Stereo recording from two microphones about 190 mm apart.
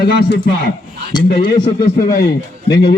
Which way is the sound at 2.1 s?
55° left (ahead or behind).